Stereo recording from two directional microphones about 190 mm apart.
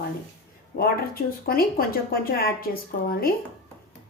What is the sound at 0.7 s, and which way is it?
Speech, 50° left (ahead or behind).